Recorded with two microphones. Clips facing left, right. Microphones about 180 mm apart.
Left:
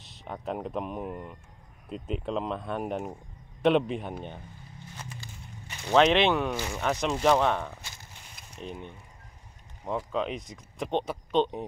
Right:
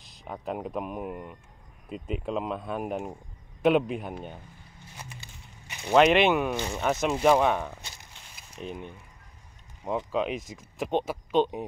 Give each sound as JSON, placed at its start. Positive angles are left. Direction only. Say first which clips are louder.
{"t": 0.2, "sound": "speech", "louder": "even", "side_deg": -5}
{"t": 5.7, "sound": "speech", "louder": "right 2 dB", "side_deg": -15}
{"t": 6.5, "sound": "speech", "louder": "right 2 dB", "side_deg": -20}
{"t": 6.8, "sound": "speech", "louder": "right 2 dB", "side_deg": -5}